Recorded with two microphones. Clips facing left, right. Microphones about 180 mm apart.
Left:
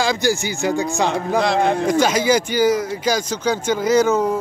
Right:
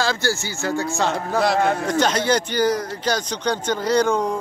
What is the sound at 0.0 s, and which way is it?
Speech, 15° left (ahead or behind).